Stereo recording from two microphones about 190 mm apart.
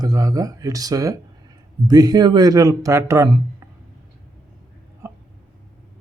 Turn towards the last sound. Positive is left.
turn(degrees=-15)  # may be behind; listen again after turning